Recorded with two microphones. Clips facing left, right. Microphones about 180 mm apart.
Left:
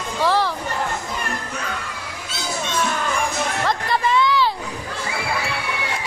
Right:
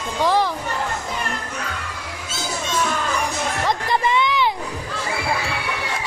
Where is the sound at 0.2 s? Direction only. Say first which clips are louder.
Right 1 dB; 15° right (ahead or behind).